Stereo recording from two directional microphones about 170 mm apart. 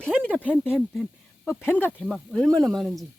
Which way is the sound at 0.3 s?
10° left (ahead or behind).